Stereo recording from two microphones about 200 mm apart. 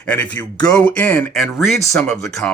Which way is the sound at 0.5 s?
20° left (ahead or behind).